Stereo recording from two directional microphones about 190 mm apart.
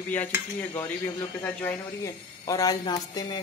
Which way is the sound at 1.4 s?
10° left (ahead or behind).